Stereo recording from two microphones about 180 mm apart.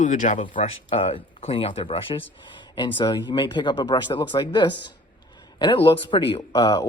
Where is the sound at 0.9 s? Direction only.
30° left (ahead or behind).